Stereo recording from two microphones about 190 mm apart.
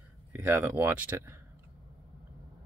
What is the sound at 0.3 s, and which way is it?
Speech, 10° right (ahead or behind).